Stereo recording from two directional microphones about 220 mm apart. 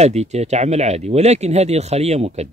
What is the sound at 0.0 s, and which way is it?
Speech, 30° right (ahead or behind).